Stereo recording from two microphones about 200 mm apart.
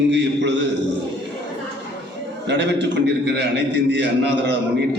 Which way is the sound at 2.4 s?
60° right (ahead or behind).